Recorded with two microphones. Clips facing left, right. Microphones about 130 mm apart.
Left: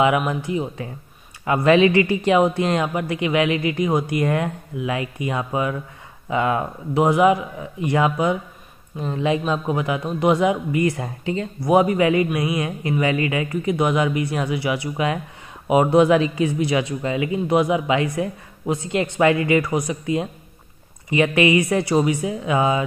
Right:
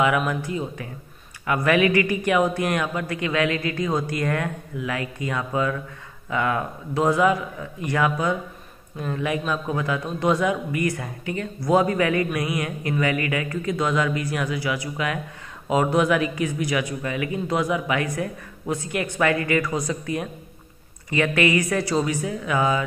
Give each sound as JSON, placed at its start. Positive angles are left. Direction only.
{"t": 0.0, "sound": "speech", "side_deg": 25}